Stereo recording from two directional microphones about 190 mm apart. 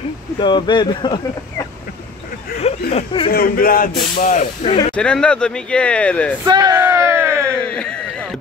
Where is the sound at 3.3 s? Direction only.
50° left (ahead or behind).